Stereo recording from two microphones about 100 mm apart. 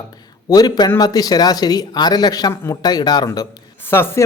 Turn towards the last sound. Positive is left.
turn(degrees=25)  # may be behind; listen again after turning